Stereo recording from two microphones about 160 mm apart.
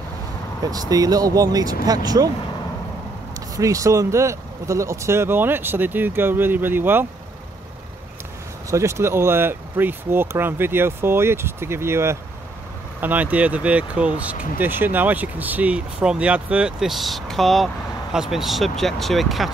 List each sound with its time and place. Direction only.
0.7 s speech: 25° right (ahead or behind)
3.3 s speech: 20° right (ahead or behind)
8.6 s speech: 20° right (ahead or behind)
14.3 s speech: 60° left (ahead or behind)
14.6 s speech: 10° right (ahead or behind)